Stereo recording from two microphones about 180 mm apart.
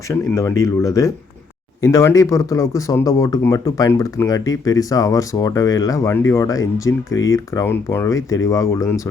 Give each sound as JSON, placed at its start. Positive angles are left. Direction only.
{"t": 0.1, "sound": "speech", "side_deg": 15}